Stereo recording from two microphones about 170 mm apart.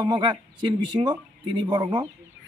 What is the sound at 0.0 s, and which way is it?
Speech, 25° right (ahead or behind).